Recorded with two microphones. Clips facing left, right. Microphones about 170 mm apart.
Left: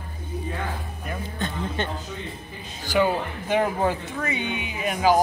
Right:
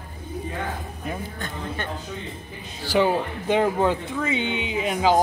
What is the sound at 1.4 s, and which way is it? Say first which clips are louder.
Speech: left 3 dB; 25° left (ahead or behind).